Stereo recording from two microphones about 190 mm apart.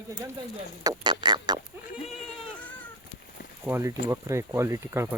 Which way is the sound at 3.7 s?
15° right (ahead or behind).